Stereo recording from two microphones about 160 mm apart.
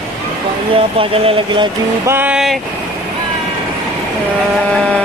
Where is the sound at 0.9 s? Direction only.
35° right (ahead or behind).